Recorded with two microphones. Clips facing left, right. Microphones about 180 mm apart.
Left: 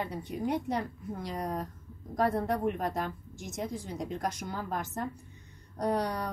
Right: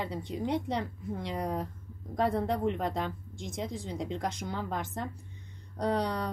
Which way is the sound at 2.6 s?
25° right (ahead or behind).